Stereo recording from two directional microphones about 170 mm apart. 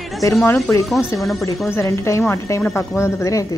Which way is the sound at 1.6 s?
15° left (ahead or behind).